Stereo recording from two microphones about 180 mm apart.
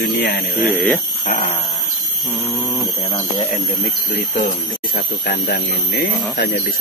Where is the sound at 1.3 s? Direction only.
35° left (ahead or behind).